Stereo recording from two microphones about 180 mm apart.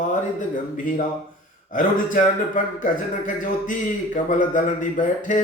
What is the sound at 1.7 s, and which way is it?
A man's voice, 45° left (ahead or behind).